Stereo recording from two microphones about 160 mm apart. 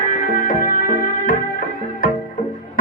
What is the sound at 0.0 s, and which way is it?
Music, 60° left (ahead or behind).